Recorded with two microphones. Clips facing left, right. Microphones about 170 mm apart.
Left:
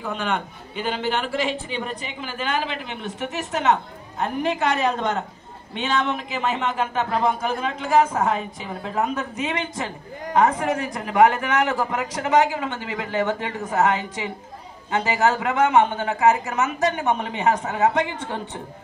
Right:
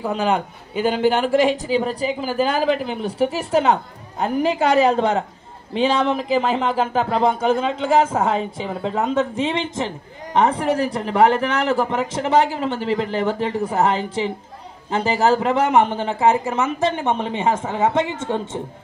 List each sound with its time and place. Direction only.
0.1 s a man's voice: 35° right (ahead or behind)
1.8 s speech: 35° right (ahead or behind)